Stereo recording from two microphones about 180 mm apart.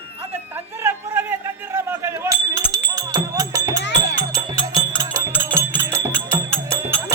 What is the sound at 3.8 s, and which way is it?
Music, 70° left (ahead or behind).